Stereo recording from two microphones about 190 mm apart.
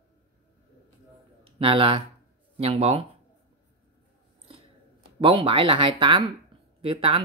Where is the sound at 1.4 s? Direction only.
30° right (ahead or behind).